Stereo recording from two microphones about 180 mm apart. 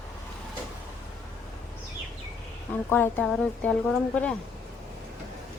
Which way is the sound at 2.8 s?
10° left (ahead or behind).